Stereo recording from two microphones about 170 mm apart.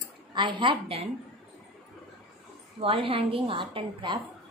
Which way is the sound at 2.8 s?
30° right (ahead or behind).